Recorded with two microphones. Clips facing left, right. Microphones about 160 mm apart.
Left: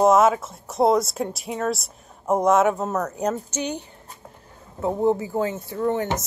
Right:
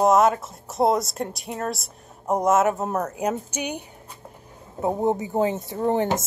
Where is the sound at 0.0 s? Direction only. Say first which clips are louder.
Left 1 dB; centre (ahead or behind).